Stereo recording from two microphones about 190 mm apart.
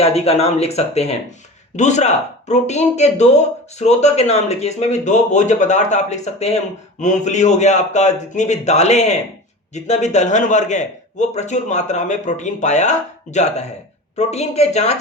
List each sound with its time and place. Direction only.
0.0 s speech: 30° left (ahead or behind)